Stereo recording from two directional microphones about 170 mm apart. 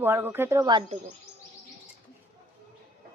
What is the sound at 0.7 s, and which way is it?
Speech, 30° right (ahead or behind).